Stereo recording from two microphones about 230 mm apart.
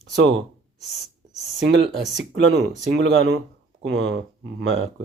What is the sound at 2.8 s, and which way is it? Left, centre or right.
Speech, right.